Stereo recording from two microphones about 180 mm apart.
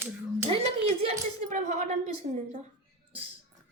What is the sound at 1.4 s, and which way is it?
Speech, 40° right (ahead or behind).